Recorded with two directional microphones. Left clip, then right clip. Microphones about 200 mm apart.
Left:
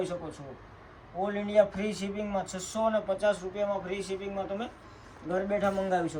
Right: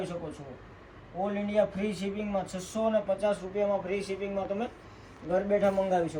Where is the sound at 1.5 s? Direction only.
20° left (ahead or behind); by 4.0 s 5° left (ahead or behind).